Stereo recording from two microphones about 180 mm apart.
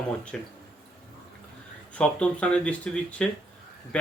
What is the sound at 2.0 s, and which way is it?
Speech, 5° left (ahead or behind).